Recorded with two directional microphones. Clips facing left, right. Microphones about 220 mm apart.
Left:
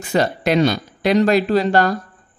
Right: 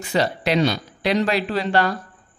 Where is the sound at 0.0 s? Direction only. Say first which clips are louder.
Left 3 dB; 45° left (ahead or behind).